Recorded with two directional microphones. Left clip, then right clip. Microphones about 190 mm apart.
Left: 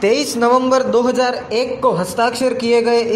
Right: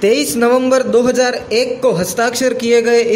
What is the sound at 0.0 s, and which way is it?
A man's voice, 25° right (ahead or behind).